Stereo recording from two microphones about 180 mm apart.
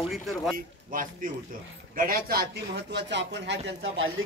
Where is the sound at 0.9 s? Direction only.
50° right (ahead or behind).